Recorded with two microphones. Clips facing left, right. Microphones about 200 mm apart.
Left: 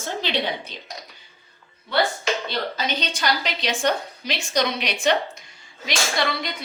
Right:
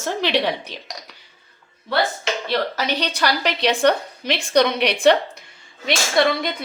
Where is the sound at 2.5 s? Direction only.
70° right (ahead or behind).